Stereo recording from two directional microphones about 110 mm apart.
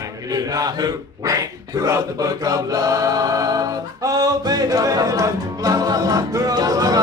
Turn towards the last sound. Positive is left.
turn(degrees=-35)  # may be behind; listen again after turning